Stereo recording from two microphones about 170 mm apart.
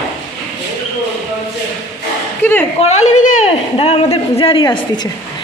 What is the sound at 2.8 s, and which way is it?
A man's voice, 40° left (ahead or behind).